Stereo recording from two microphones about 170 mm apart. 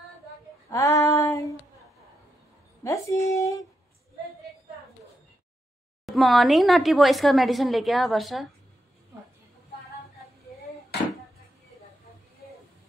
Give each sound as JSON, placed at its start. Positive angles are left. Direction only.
{"t": 0.7, "sound": "female singing", "side_deg": 20}
{"t": 2.8, "sound": "a sound", "side_deg": 20}
{"t": 6.0, "sound": "speech", "side_deg": 0}